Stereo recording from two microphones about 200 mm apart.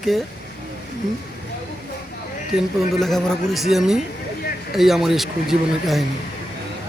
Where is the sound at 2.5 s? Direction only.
Centre (ahead or behind).